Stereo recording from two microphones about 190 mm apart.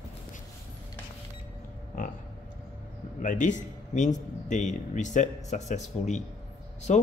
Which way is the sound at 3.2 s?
40° left (ahead or behind).